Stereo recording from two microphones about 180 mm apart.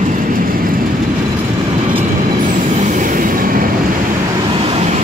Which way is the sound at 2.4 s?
45° right (ahead or behind).